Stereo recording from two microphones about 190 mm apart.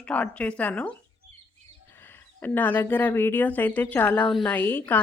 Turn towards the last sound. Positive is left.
turn(degrees=10)  # may be behind; listen again after turning